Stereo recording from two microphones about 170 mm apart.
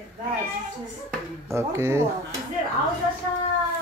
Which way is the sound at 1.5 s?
15° right (ahead or behind).